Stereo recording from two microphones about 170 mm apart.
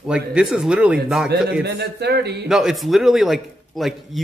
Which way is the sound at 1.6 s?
75° right (ahead or behind).